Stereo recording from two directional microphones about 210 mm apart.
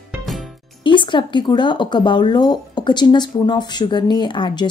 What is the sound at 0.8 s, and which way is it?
A woman's voice, 25° left (ahead or behind).